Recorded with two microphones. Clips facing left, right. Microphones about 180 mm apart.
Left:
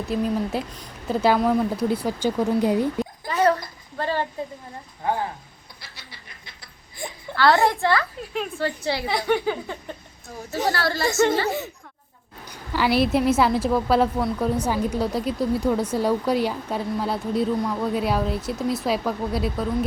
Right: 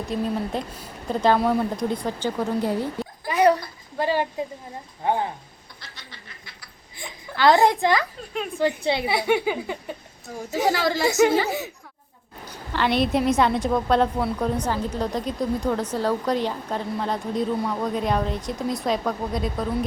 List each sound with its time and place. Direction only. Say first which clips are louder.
0.1 s a woman's voice: left 2 dB; 5° left (ahead or behind)
3.2 s dog: right 2 dB; 15° right (ahead or behind)
3.9 s speech: right 2 dB; 15° right (ahead or behind)
5.8 s a sound: right 1 dB; 10° left (ahead or behind)
7.3 s speech: right 1 dB; 15° right (ahead or behind)
12.5 s a woman's voice: left 1 dB; 10° left (ahead or behind)